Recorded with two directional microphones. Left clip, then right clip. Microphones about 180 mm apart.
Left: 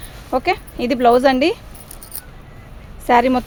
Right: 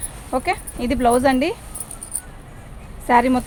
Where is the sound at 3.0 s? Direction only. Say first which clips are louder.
Left 2 dB; 45° left (ahead or behind).